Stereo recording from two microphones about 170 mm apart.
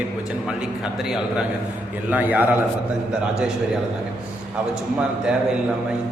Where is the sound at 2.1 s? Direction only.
10° right (ahead or behind).